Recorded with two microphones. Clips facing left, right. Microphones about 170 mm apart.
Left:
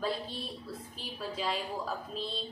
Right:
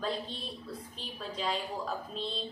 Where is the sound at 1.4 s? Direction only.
5° left (ahead or behind).